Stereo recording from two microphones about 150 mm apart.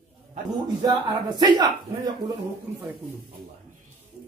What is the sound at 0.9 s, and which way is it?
Speech, 25° right (ahead or behind).